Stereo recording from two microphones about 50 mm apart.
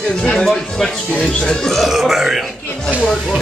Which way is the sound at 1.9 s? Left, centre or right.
Centre.